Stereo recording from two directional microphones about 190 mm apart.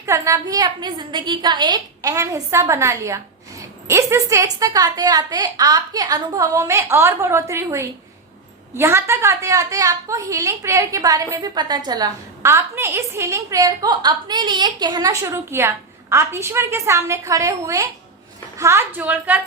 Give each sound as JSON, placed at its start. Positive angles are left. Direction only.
{"t": 0.0, "sound": "a woman's voice", "side_deg": -15}